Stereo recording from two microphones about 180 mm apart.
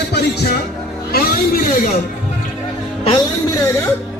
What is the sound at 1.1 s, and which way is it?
Speech, 50° left (ahead or behind).